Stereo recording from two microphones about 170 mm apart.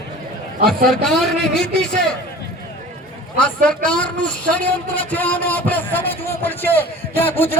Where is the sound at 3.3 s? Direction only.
5° left (ahead or behind).